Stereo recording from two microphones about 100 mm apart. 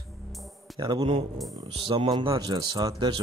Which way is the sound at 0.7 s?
45° right (ahead or behind).